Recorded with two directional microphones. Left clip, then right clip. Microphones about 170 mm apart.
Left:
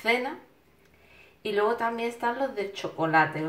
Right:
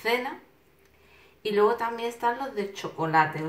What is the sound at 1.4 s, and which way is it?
A woman's voice, 25° left (ahead or behind).